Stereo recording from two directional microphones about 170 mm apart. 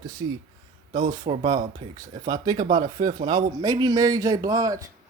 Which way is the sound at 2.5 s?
50° right (ahead or behind).